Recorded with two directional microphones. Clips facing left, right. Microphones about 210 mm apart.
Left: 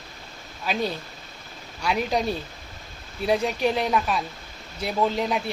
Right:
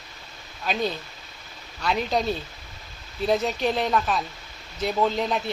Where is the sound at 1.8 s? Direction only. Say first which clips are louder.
Even; 10° left (ahead or behind).